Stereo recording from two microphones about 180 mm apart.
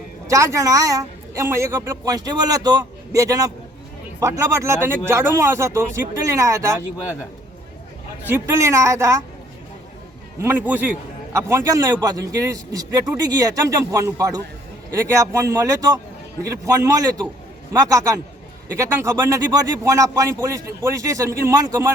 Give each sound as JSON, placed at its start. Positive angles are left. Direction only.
{"t": 0.3, "sound": "a woman's voice", "side_deg": -15}
{"t": 8.3, "sound": "speech", "side_deg": -15}
{"t": 10.4, "sound": "a woman's voice", "side_deg": -10}